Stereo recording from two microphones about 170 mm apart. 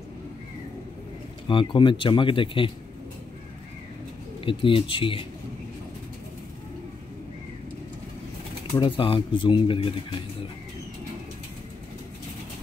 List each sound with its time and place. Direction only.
1.5 s speech: 30° left (ahead or behind)
4.5 s speech: 30° left (ahead or behind)
8.7 s speech: 30° left (ahead or behind)